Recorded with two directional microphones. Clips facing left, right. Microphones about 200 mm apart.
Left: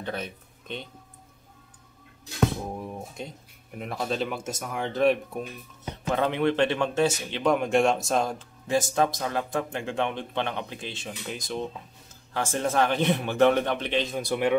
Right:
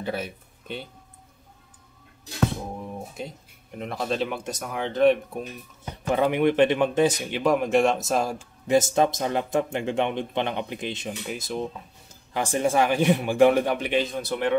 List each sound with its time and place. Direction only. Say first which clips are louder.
0.0 s speech: right 3 dB; 10° right (ahead or behind)
3.2 s speech: right 2 dB; 5° right (ahead or behind)
6.0 s a man's voice: right 3 dB; 10° right (ahead or behind)
8.6 s speech: right 4 dB; 20° right (ahead or behind)
11.2 s a man's voice: right 1 dB; 5° right (ahead or behind)
14.1 s speech: left 1 dB; 10° left (ahead or behind)